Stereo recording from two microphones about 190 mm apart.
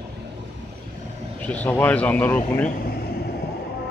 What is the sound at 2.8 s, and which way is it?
Air conditioning, 55° left (ahead or behind).